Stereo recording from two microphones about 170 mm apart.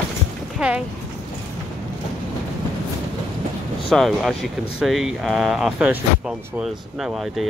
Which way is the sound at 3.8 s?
Centre (ahead or behind).